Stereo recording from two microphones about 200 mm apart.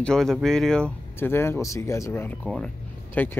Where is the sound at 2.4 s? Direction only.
5° left (ahead or behind).